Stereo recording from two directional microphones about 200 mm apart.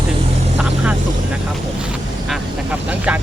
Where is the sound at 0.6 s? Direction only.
5° right (ahead or behind).